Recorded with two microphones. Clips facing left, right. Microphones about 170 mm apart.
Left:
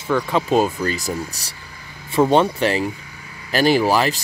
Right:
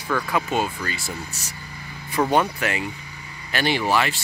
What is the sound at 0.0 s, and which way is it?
Speech, 20° left (ahead or behind).